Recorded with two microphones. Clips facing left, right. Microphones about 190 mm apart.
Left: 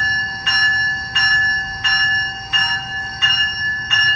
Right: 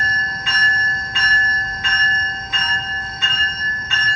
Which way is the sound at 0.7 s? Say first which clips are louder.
Right 1 dB; 55° right (ahead or behind).